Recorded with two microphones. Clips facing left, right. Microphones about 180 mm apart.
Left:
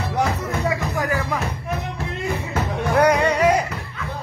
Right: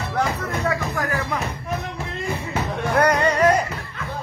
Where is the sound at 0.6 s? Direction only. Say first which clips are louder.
Left 1 dB; 15° left (ahead or behind).